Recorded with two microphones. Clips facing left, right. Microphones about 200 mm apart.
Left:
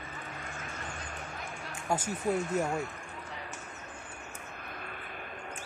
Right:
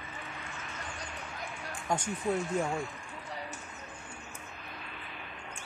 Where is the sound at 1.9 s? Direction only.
5° left (ahead or behind).